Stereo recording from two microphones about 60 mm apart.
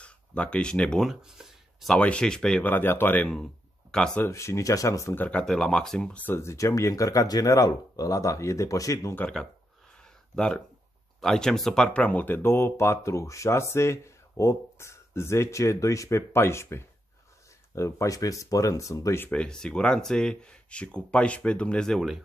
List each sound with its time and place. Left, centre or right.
0.0 s speech: centre
1.2 s a sound: centre
2.0 s speech: centre
2.6 s speech: left
3.9 s speech: centre
4.3 s speech: left
5.3 s speech: centre
6.5 s speech: left
10.3 s speech: centre
12.4 s speech: left
19.3 s speech: centre